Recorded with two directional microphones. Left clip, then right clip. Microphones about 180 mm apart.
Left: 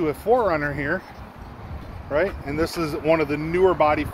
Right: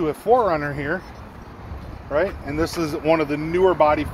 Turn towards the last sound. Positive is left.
turn(degrees=5)  # may be behind; listen again after turning